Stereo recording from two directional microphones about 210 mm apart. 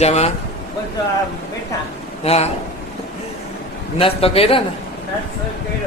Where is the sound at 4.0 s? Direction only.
25° left (ahead or behind).